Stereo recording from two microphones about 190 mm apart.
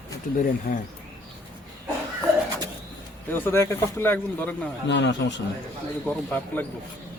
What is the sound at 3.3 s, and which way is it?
Speech, 10° left (ahead or behind).